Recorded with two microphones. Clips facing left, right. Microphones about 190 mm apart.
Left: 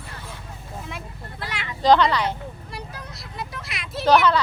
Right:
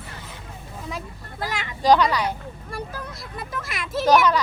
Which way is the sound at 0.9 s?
40° right (ahead or behind).